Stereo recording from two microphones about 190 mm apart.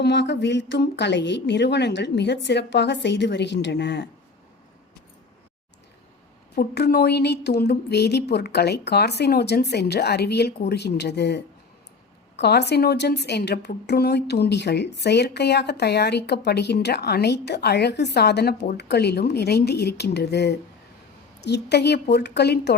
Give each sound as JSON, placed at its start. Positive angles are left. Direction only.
{"t": 0.0, "sound": "a woman's voice", "side_deg": 65}
{"t": 6.6, "sound": "a woman's voice", "side_deg": 60}